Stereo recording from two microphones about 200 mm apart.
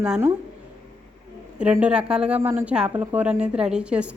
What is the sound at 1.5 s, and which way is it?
A woman's voice, 5° right (ahead or behind).